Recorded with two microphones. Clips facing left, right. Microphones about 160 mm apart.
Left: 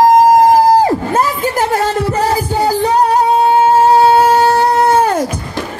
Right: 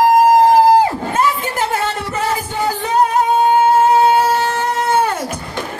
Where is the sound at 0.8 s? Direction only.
40° left (ahead or behind).